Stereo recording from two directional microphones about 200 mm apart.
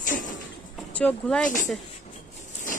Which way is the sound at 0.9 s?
5° left (ahead or behind).